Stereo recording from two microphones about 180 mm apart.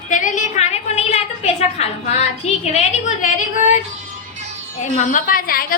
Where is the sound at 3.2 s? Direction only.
45° left (ahead or behind).